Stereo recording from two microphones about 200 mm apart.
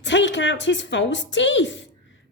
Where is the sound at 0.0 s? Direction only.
65° left (ahead or behind).